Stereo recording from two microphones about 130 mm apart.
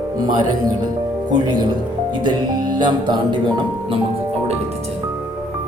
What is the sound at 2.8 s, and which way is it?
Speech, 35° right (ahead or behind).